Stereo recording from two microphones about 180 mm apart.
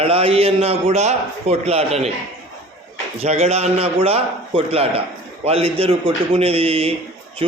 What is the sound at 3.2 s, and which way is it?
A man's voice, 35° right (ahead or behind).